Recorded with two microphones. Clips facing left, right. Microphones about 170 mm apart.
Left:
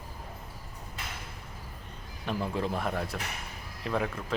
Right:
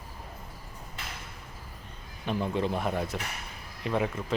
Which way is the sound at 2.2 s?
Centre (ahead or behind).